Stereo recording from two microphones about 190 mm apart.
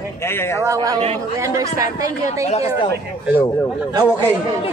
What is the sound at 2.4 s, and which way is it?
Speech, 35° left (ahead or behind).